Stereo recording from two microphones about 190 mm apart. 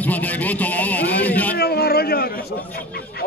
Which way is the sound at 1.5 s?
55° left (ahead or behind).